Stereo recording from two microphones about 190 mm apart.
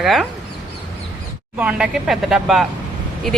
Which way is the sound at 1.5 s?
5° right (ahead or behind).